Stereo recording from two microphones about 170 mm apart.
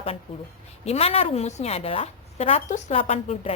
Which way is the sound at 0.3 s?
30° left (ahead or behind).